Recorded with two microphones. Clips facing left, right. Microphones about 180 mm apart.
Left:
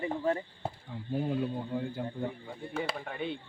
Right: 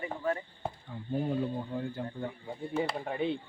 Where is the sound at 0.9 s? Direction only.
5° left (ahead or behind).